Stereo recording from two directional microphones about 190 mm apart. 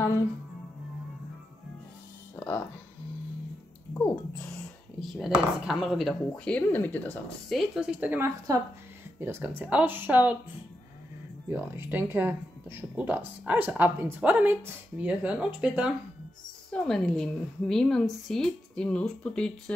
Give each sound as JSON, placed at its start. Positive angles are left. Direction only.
{"t": 2.3, "sound": "music", "side_deg": 10}
{"t": 5.1, "sound": "speech", "side_deg": 0}
{"t": 11.5, "sound": "speech", "side_deg": -10}